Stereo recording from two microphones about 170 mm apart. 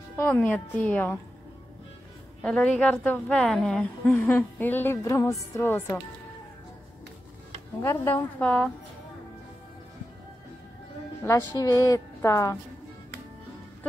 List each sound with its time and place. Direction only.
0.2 s a woman's voice: 10° left (ahead or behind)
2.4 s a woman's voice: 5° left (ahead or behind)
7.8 s a woman's voice: 15° left (ahead or behind)
11.2 s a woman's voice: 20° left (ahead or behind)